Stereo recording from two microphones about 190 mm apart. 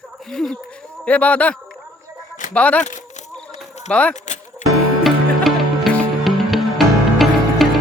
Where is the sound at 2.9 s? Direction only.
40° left (ahead or behind).